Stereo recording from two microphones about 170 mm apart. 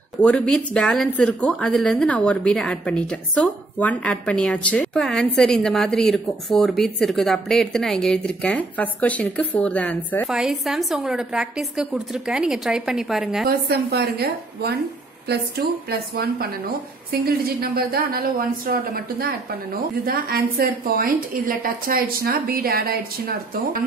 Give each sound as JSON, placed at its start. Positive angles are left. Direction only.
{"t": 0.2, "sound": "a woman's voice", "side_deg": 5}
{"t": 13.5, "sound": "a woman's voice", "side_deg": -70}